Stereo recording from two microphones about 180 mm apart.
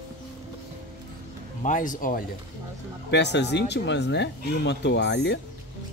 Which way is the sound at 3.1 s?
75° left (ahead or behind).